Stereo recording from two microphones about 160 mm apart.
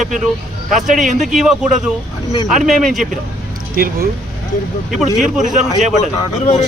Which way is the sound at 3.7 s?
65° right (ahead or behind).